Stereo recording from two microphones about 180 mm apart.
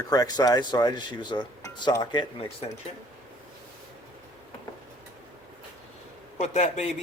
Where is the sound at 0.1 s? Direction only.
20° left (ahead or behind).